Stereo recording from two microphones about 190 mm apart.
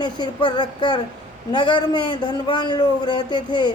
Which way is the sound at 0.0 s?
25° left (ahead or behind).